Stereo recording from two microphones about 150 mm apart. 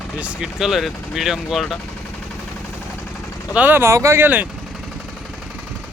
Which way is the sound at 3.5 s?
10° right (ahead or behind).